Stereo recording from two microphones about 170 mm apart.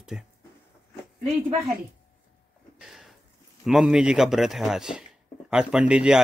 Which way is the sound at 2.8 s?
Centre (ahead or behind).